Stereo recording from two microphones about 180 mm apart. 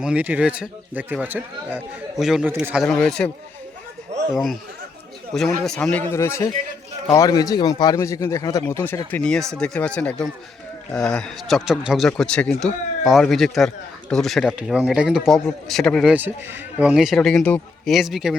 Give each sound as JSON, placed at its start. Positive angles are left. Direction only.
{"t": 0.0, "sound": "a man's voice", "side_deg": -5}
{"t": 5.6, "sound": "speech", "side_deg": 5}
{"t": 16.1, "sound": "speech", "side_deg": -10}